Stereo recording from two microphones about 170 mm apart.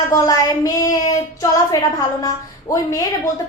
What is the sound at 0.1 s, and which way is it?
Child singing, 20° left (ahead or behind).